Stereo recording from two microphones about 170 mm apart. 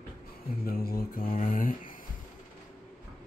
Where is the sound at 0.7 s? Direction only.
60° left (ahead or behind).